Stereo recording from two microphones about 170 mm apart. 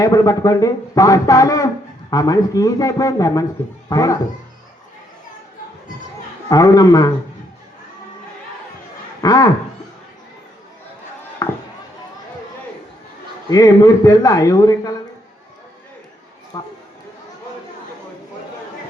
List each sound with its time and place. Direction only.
0.0 s a man's voice: 20° left (ahead or behind)
6.5 s a man's voice: 20° left (ahead or behind)
9.2 s a man's voice: 20° left (ahead or behind)
11.4 s chop: 20° left (ahead or behind)
13.5 s a man's voice: 20° left (ahead or behind)
16.5 s a man's voice: 20° left (ahead or behind)